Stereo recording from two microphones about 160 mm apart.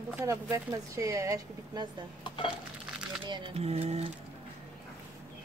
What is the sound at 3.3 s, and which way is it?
Speech, 35° right (ahead or behind).